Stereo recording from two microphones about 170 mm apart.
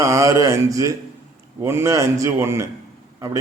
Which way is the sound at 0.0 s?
20° right (ahead or behind).